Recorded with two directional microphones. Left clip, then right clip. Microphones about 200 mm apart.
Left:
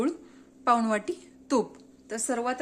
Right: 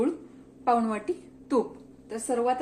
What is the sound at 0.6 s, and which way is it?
A woman's voice, 50° left (ahead or behind).